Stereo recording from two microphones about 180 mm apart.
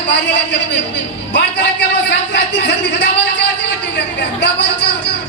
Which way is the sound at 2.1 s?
75° left (ahead or behind).